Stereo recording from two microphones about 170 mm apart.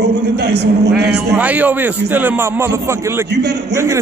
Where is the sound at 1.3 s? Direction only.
10° right (ahead or behind).